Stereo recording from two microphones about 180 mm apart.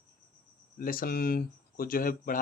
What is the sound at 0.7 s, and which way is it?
Speech, 55° left (ahead or behind).